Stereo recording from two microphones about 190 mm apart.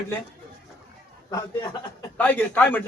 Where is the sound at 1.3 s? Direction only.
20° left (ahead or behind).